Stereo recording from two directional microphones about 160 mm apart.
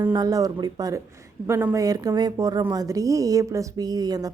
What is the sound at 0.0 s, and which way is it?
A woman's voice, 25° right (ahead or behind).